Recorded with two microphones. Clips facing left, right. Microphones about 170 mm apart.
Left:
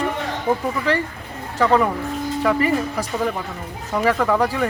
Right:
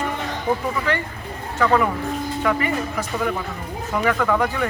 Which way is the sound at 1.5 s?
30° left (ahead or behind).